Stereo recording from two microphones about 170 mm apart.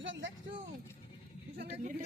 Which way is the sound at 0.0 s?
90° right.